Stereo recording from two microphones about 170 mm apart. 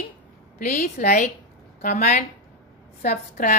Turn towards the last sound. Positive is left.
turn(degrees=50)  # may be behind; listen again after turning